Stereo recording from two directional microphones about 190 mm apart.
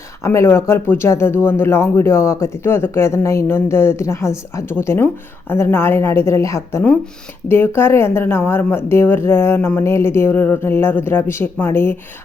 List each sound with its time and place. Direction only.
0.2 s speech: 15° left (ahead or behind)